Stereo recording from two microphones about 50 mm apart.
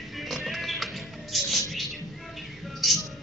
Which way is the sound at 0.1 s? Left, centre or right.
Centre.